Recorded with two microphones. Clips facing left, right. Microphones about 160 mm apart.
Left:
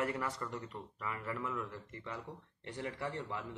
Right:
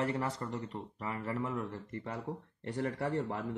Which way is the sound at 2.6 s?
45° right (ahead or behind).